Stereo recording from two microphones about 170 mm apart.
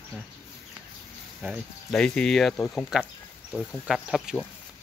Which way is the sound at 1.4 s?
Centre (ahead or behind).